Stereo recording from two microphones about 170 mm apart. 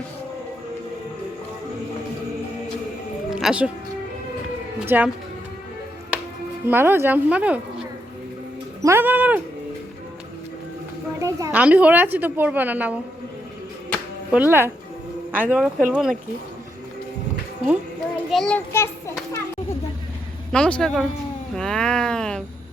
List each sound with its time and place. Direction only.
3.2 s music: 5° right (ahead or behind)
4.8 s a woman's voice: 10° right (ahead or behind)
6.7 s a woman's voice: 10° right (ahead or behind)
8.8 s a sound: 15° right (ahead or behind)
11.2 s a sound: 20° right (ahead or behind)
11.5 s a woman's voice: 10° right (ahead or behind)
14.3 s a woman's voice: 10° right (ahead or behind)
18.3 s speech: 5° left (ahead or behind)
18.7 s children playing: 15° left (ahead or behind)
20.5 s speech: 5° left (ahead or behind)